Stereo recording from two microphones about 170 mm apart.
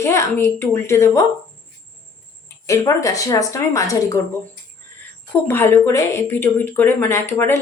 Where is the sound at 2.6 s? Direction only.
20° left (ahead or behind).